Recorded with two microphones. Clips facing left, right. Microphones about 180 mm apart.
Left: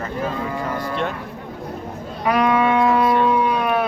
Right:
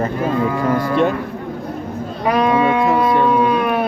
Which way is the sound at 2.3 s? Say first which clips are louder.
Right 2 dB; 30° right (ahead or behind).